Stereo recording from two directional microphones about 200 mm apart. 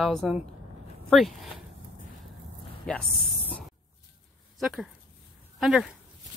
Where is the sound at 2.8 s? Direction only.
5° left (ahead or behind).